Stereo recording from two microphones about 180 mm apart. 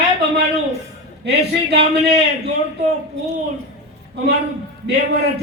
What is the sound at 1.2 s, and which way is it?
A man's voice, 65° right (ahead or behind).